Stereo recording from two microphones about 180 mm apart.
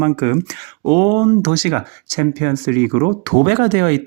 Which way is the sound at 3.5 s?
45° right (ahead or behind).